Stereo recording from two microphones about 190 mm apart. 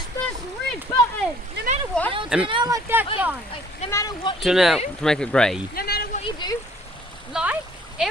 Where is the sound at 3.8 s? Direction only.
15° left (ahead or behind).